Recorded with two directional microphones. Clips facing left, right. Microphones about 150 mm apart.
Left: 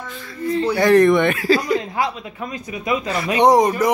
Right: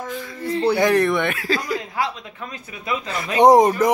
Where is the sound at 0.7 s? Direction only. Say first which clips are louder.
Left 6 dB; 15° right (ahead or behind).